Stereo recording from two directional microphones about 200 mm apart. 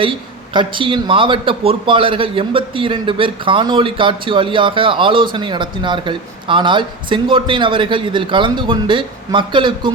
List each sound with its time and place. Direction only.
0.0 s a man's voice: 25° right (ahead or behind)